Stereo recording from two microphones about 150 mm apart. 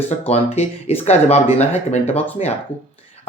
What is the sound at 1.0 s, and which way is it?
Speech, 45° left (ahead or behind).